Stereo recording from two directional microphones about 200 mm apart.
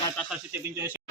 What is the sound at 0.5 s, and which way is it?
Speech, 10° right (ahead or behind).